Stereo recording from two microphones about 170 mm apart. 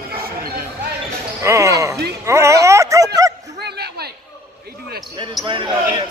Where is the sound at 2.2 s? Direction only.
15° right (ahead or behind).